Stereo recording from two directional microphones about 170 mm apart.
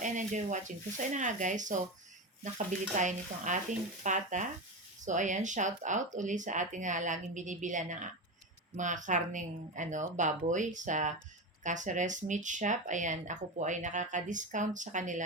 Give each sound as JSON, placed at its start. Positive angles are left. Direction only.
{"t": 0.0, "sound": "speech", "side_deg": -45}